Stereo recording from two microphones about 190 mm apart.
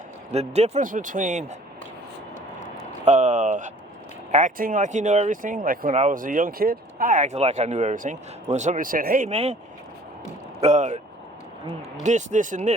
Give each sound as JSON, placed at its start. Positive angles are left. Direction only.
{"t": 0.3, "sound": "speech", "side_deg": -35}
{"t": 3.0, "sound": "speech", "side_deg": -40}
{"t": 10.6, "sound": "speech", "side_deg": -40}
{"t": 12.0, "sound": "speech", "side_deg": -40}